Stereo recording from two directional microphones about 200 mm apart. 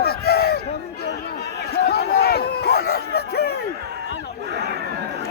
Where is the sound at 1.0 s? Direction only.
55° left (ahead or behind).